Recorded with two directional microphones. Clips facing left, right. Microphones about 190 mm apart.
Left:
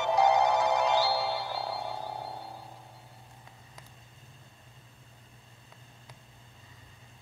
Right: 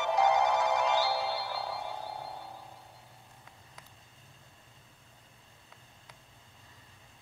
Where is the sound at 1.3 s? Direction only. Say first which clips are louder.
Left 2 dB; 30° left (ahead or behind).